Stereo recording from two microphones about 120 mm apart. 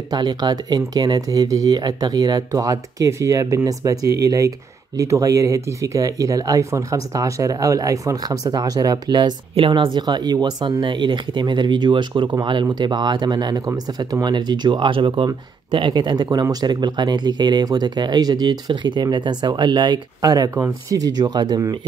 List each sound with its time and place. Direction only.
0.1 s speech: 35° right (ahead or behind)